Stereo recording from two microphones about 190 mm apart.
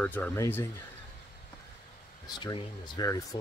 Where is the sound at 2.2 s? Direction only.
20° left (ahead or behind).